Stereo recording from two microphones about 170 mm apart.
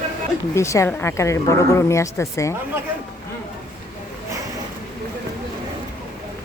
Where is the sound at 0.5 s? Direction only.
15° left (ahead or behind).